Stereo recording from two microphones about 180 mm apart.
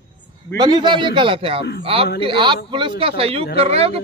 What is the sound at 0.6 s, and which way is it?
A man's voice, 25° right (ahead or behind).